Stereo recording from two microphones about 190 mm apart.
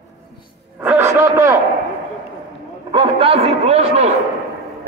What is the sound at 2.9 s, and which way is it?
A man's voice, 30° right (ahead or behind).